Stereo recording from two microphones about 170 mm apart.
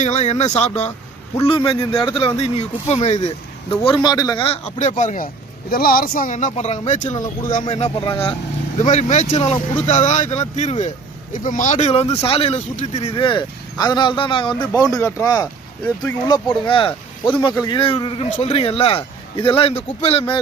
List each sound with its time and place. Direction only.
0.0 s speech: 40° left (ahead or behind)
1.5 s speech: 30° left (ahead or behind)
3.8 s speech: 25° left (ahead or behind); by 7.6 s 50° left (ahead or behind)
7.6 s speech: 30° left (ahead or behind)
8.8 s speech: 45° left (ahead or behind)